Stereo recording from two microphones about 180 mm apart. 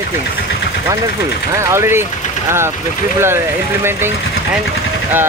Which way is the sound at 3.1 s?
15° right (ahead or behind).